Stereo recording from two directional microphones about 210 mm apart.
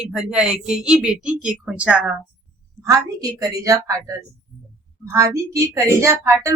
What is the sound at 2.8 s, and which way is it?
Speech, 15° right (ahead or behind).